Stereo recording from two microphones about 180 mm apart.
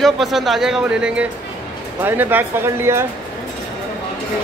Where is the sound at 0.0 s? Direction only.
Centre (ahead or behind).